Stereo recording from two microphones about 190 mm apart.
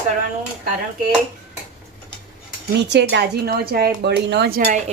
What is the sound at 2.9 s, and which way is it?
Speech, 60° right (ahead or behind).